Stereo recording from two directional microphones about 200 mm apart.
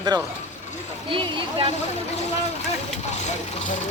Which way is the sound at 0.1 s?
20° right (ahead or behind).